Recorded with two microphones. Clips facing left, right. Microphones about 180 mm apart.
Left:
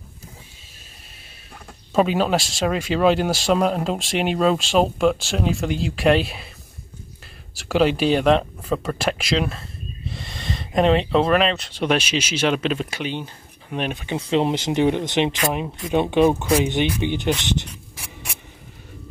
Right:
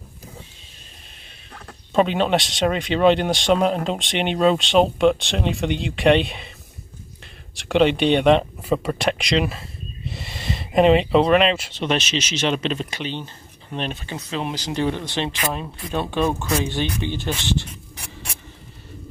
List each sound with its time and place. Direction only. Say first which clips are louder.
1.5 s speech: even; 5° left (ahead or behind)
7.5 s speech: right 1 dB; centre (ahead or behind)
11.7 s speech: left 2 dB; 10° left (ahead or behind)
14.0 s speech: left 7 dB; 30° left (ahead or behind)